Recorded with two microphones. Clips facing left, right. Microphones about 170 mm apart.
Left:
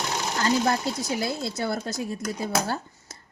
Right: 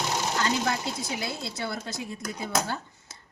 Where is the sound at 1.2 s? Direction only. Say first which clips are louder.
Left 5 dB; 45° left (ahead or behind).